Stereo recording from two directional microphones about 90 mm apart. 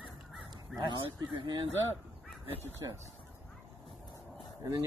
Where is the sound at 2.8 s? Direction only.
45° right (ahead or behind).